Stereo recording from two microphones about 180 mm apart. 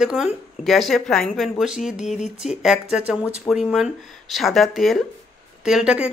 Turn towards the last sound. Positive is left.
turn(degrees=-5)  # may be behind; listen again after turning